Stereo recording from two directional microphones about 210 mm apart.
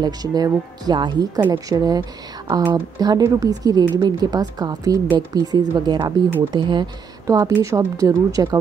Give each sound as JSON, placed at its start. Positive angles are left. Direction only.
{"t": 0.0, "sound": "speech", "side_deg": -20}